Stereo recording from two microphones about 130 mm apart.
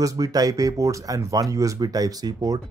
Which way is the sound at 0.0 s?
30° right (ahead or behind).